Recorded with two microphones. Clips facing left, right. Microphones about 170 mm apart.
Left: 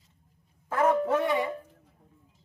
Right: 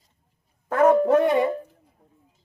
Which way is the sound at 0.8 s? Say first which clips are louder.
Right 7 dB; 40° right (ahead or behind).